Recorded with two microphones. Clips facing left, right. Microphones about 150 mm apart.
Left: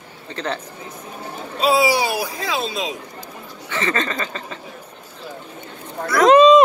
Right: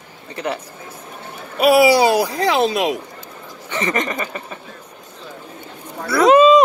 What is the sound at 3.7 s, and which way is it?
Speech, 15° right (ahead or behind).